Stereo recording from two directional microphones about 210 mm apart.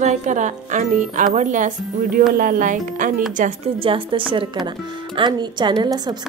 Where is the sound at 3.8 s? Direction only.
25° right (ahead or behind).